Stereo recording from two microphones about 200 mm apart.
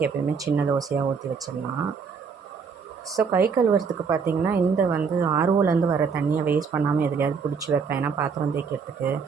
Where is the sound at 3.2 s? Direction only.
10° right (ahead or behind).